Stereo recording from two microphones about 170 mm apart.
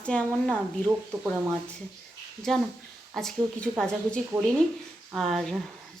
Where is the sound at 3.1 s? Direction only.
Centre (ahead or behind).